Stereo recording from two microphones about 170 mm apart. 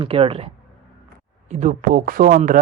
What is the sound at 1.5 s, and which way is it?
Speech, 45° right (ahead or behind).